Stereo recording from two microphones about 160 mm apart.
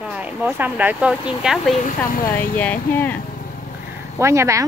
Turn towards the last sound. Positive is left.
turn(degrees=-20)  # may be behind; listen again after turning